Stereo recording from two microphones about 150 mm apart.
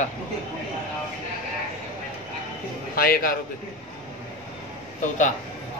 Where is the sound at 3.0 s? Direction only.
75° left (ahead or behind).